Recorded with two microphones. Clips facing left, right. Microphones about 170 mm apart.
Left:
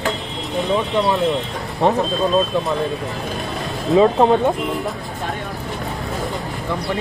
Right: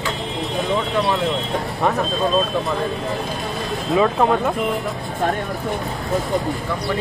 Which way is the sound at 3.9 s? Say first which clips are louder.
Left 4 dB; 30° left (ahead or behind).